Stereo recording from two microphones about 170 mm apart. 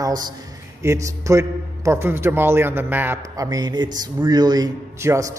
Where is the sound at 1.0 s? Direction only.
20° right (ahead or behind).